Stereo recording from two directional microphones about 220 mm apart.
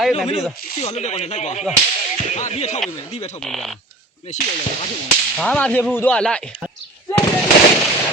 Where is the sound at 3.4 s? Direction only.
Centre (ahead or behind).